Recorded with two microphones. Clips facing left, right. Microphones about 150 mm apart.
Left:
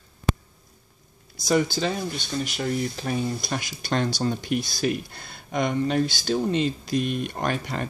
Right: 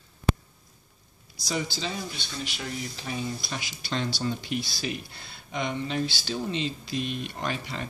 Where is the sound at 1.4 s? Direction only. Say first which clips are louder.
Left 9 dB; 55° left (ahead or behind).